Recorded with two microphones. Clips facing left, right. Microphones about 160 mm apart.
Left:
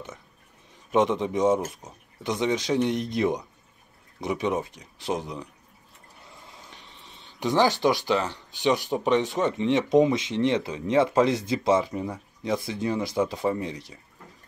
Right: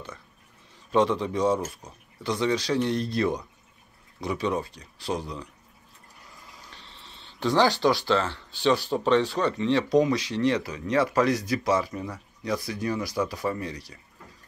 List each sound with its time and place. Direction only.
0.9 s speech: 20° left (ahead or behind)